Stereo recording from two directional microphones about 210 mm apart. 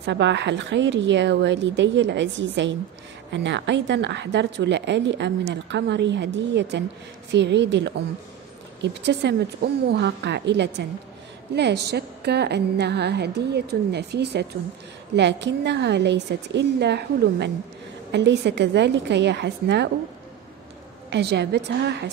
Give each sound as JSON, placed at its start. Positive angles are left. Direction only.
{"t": 0.0, "sound": "a woman's voice", "side_deg": -55}
{"t": 21.1, "sound": "a woman's voice", "side_deg": -55}